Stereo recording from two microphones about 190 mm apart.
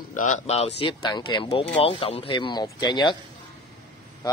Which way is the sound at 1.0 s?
20° left (ahead or behind).